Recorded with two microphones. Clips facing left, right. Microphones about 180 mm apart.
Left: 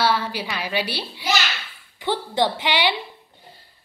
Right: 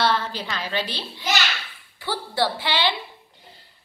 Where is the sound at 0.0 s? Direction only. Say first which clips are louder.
Left 1 dB; 10° left (ahead or behind).